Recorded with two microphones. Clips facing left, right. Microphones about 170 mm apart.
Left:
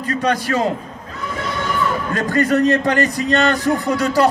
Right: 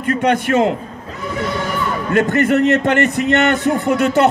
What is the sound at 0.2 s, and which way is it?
Speech, 25° right (ahead or behind).